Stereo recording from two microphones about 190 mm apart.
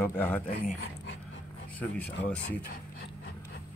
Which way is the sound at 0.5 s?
50° left (ahead or behind).